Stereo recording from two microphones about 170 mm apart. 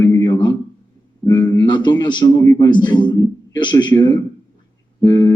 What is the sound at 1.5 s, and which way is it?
A man's voice, 25° left (ahead or behind).